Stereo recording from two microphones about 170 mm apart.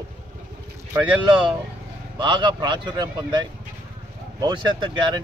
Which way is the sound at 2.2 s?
30° right (ahead or behind).